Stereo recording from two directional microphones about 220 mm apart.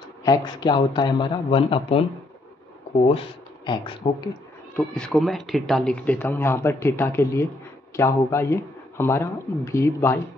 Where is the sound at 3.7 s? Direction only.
20° left (ahead or behind).